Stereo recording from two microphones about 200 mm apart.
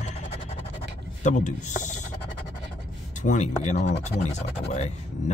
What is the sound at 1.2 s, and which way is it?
Speech, 35° left (ahead or behind).